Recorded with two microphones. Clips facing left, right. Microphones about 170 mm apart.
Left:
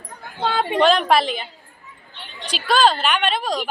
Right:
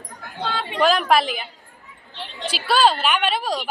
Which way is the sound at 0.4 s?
50° left (ahead or behind).